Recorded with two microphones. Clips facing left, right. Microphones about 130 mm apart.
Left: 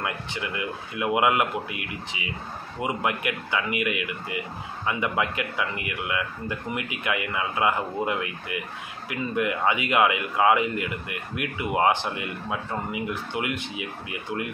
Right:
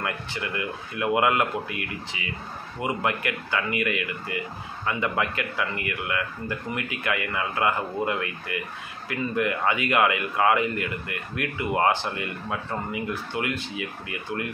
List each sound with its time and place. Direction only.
0.0 s speech: 15° left (ahead or behind)